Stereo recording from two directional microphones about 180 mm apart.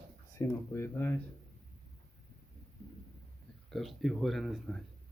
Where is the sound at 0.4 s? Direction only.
15° left (ahead or behind).